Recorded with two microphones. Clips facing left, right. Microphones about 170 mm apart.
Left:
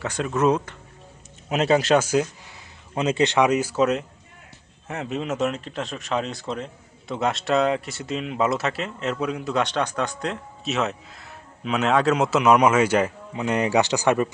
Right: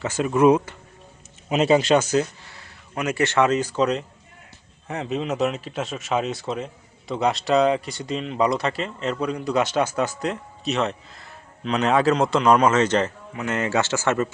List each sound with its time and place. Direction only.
0.0 s speech: 5° right (ahead or behind); by 14.3 s 15° left (ahead or behind)